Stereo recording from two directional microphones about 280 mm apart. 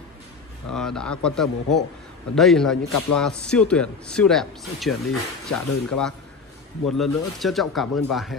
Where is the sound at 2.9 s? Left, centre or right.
Left.